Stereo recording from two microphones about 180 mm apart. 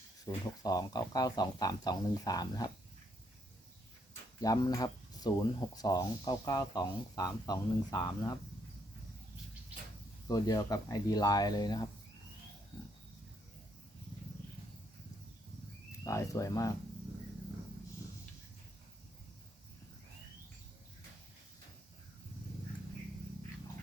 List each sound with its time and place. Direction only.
0.3 s speech: 20° left (ahead or behind)
4.4 s speech: 20° left (ahead or behind)
10.2 s speech: 20° left (ahead or behind)
16.0 s speech: 15° left (ahead or behind)